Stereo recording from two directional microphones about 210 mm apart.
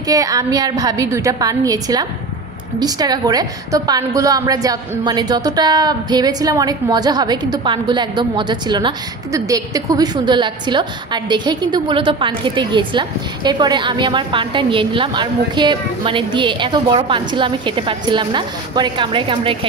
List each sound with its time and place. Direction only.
0.0 s a woman's voice: 15° right (ahead or behind)